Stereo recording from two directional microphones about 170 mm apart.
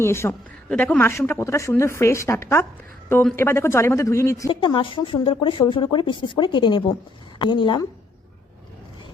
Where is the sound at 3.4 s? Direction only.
15° left (ahead or behind).